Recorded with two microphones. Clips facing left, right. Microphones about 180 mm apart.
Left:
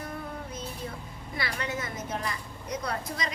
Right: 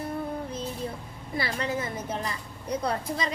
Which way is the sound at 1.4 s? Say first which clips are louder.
Right 4 dB; 30° right (ahead or behind).